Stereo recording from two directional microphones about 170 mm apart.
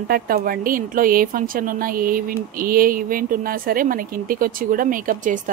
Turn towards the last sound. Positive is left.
turn(degrees=-50)  # may be behind; listen again after turning